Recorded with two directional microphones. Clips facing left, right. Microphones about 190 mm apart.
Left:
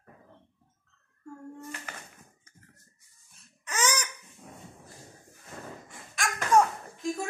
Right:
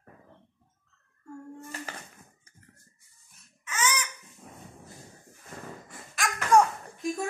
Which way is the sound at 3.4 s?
35° left (ahead or behind).